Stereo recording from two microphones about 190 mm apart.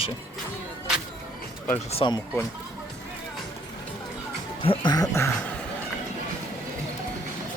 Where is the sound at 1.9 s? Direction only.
25° left (ahead or behind).